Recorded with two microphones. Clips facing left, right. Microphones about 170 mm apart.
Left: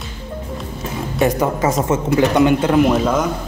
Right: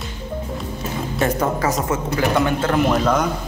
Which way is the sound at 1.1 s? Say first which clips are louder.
Left 3 dB; 15° left (ahead or behind).